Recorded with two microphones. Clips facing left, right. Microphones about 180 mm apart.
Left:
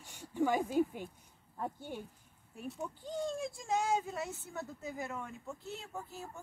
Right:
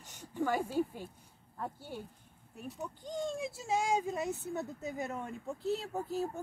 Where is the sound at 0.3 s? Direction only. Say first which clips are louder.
Left 1 dB; 15° left (ahead or behind).